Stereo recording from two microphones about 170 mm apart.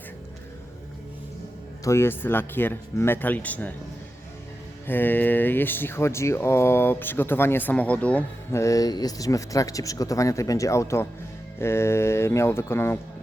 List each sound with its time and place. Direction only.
1.8 s speech: 15° left (ahead or behind)
4.9 s speech: 10° left (ahead or behind)
8.6 s speech: 20° left (ahead or behind)